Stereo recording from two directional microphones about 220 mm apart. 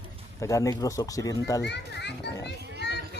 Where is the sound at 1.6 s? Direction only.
50° left (ahead or behind).